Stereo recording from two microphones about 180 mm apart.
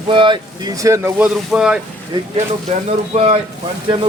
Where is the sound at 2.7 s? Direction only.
35° right (ahead or behind).